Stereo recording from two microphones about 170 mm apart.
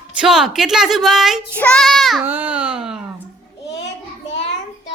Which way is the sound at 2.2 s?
10° right (ahead or behind).